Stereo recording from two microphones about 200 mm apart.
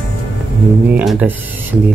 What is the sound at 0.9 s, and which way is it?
Speech, 5° right (ahead or behind).